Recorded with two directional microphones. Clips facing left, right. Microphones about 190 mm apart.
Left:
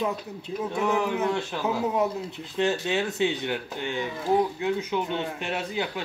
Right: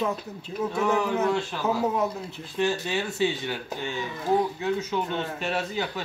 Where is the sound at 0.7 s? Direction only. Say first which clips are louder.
Right 1 dB; 15° left (ahead or behind).